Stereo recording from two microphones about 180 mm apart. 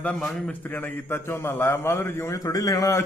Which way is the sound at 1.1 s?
10° left (ahead or behind).